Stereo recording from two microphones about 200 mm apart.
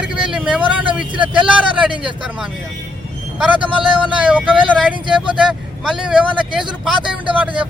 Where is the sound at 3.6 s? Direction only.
25° right (ahead or behind).